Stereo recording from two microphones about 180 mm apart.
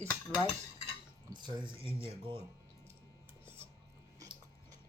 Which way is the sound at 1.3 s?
25° right (ahead or behind).